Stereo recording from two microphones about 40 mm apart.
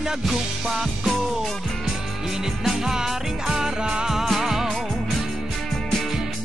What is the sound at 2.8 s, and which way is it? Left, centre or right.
Music, centre.